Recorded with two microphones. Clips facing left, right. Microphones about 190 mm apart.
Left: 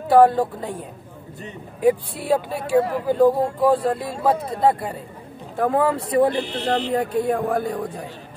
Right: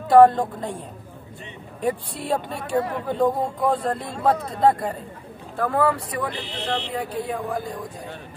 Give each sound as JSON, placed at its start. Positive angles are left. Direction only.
{"t": 0.1, "sound": "speech", "side_deg": 5}
{"t": 5.6, "sound": "speech", "side_deg": 20}
{"t": 6.3, "sound": "speech", "side_deg": 45}